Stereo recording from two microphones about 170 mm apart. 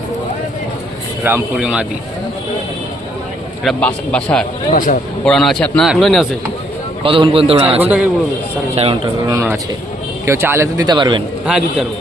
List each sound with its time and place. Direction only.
1.2 s speech: 10° right (ahead or behind)
3.6 s a man's voice: 5° left (ahead or behind)
4.7 s speech: 50° left (ahead or behind)
5.2 s a man's voice: centre (ahead or behind)
7.0 s a man's voice: 30° right (ahead or behind)
7.8 s speech: 10° right (ahead or behind)
8.7 s a man's voice: 35° right (ahead or behind)
10.2 s speech: 15° right (ahead or behind)
11.4 s a man's voice: 5° right (ahead or behind)